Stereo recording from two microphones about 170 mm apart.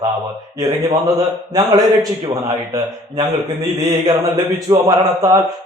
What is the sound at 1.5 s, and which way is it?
Speech, 25° right (ahead or behind).